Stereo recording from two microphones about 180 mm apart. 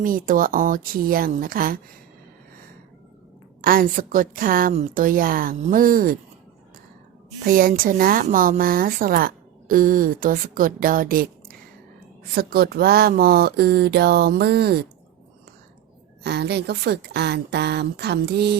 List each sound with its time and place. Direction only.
0.0 s a woman's voice: 50° right (ahead or behind)
3.6 s a woman's voice: 50° right (ahead or behind)
7.3 s a woman's voice: 50° right (ahead or behind)
16.2 s speech: 65° right (ahead or behind)